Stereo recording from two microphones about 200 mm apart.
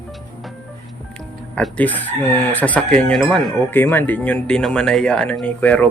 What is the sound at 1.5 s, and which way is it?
Speech, 5° left (ahead or behind).